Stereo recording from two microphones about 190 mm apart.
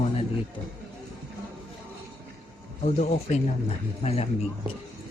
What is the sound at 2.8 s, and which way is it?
Speech, 35° left (ahead or behind).